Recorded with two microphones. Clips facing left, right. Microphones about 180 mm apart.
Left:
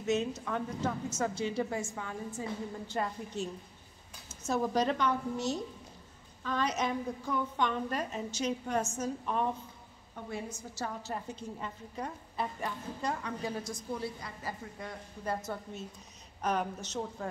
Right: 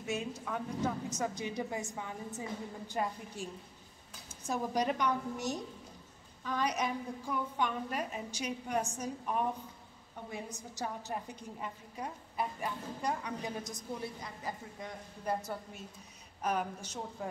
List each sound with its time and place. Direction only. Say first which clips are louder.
0.0 s a woman's voice: left 6 dB; 10° right (ahead or behind)